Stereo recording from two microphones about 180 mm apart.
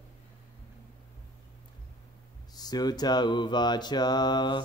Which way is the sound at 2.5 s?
20° left (ahead or behind).